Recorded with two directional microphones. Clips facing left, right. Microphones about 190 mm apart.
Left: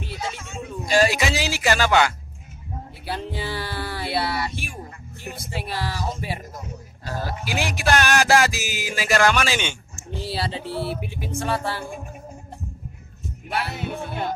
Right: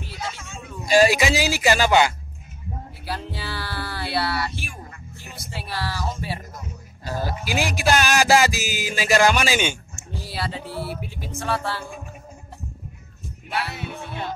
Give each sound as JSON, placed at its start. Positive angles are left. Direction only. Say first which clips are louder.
{"t": 0.2, "sound": "music", "louder": "right 1 dB", "side_deg": 15}
{"t": 0.8, "sound": "speech", "louder": "right 3 dB", "side_deg": -10}
{"t": 3.1, "sound": "music", "louder": "left 3 dB", "side_deg": 20}
{"t": 5.5, "sound": "speech", "louder": "left 1 dB", "side_deg": 15}
{"t": 7.2, "sound": "music", "louder": "right 2 dB", "side_deg": -5}
{"t": 9.2, "sound": "speech", "louder": "right 1 dB", "side_deg": -10}
{"t": 10.1, "sound": "a sound", "louder": "left 3 dB", "side_deg": 30}